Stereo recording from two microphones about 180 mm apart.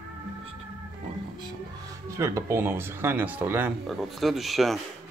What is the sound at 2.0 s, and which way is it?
Speech, 15° right (ahead or behind).